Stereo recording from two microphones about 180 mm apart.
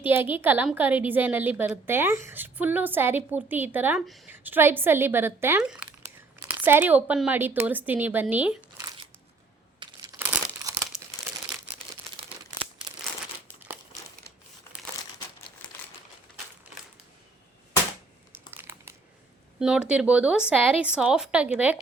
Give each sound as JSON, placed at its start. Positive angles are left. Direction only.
{"t": 0.0, "sound": "speech", "side_deg": -10}
{"t": 9.8, "sound": "crumpling", "side_deg": -25}
{"t": 14.7, "sound": "crumpling", "side_deg": 10}
{"t": 18.5, "sound": "crumpling", "side_deg": -10}
{"t": 19.5, "sound": "speech", "side_deg": -5}